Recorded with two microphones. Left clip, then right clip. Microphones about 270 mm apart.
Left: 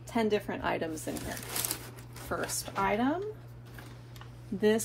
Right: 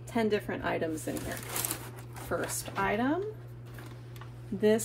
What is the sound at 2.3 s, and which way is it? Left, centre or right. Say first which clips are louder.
Speech: even; centre.